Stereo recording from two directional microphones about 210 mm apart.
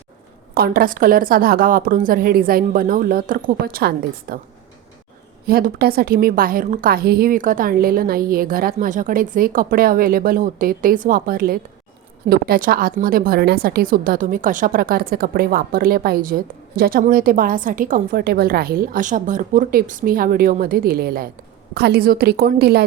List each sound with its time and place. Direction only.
0.5 s a woman's voice: 45° right (ahead or behind)
5.5 s a woman's voice: 45° right (ahead or behind)